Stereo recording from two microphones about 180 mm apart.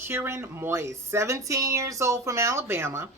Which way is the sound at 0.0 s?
15° right (ahead or behind).